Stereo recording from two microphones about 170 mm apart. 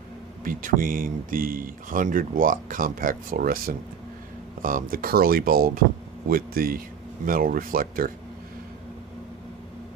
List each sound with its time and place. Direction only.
0.4 s speech: 55° right (ahead or behind)